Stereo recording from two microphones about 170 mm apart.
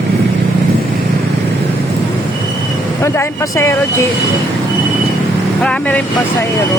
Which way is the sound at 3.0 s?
15° left (ahead or behind).